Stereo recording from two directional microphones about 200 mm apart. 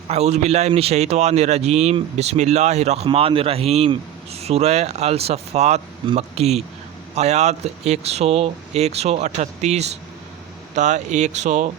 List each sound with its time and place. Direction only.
0.1 s speech: 35° right (ahead or behind)